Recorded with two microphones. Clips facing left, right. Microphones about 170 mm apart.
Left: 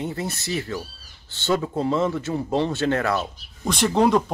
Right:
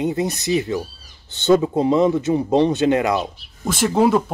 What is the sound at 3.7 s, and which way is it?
Speech, 5° right (ahead or behind).